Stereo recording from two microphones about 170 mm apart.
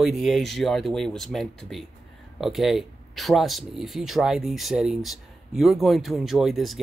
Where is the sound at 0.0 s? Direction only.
Centre (ahead or behind).